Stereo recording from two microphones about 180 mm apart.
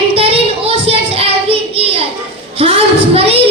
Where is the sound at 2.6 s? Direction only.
30° right (ahead or behind).